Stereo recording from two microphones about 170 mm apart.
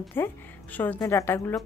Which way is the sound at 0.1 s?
10° left (ahead or behind).